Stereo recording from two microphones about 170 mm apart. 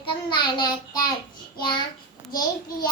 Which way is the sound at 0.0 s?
25° left (ahead or behind).